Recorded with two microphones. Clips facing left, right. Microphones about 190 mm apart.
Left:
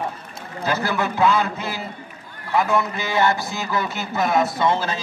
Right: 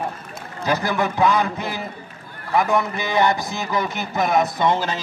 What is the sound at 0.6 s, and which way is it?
A man's voice, 15° right (ahead or behind).